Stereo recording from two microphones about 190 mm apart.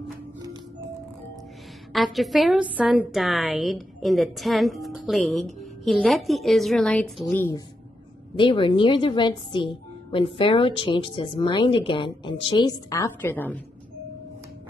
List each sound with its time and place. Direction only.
0.4 s music: 20° right (ahead or behind)
1.9 s a woman's voice: centre (ahead or behind)
8.4 s a woman's voice: 25° left (ahead or behind); by 13.6 s 10° left (ahead or behind)